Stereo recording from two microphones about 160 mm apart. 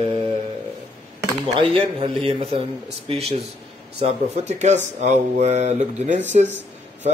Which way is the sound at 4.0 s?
40° right (ahead or behind).